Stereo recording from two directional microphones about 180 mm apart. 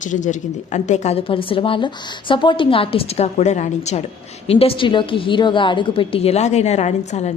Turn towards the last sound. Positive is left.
turn(degrees=40)  # may be behind; listen again after turning